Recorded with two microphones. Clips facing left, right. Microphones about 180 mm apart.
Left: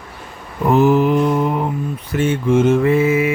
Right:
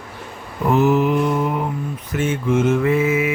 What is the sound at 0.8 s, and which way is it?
Mantra, 35° left (ahead or behind).